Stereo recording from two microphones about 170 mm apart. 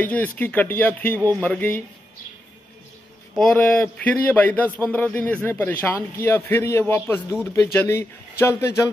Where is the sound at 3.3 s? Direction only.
5° left (ahead or behind).